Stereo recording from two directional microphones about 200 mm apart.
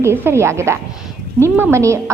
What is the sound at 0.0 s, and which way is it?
A woman's voice, 15° right (ahead or behind).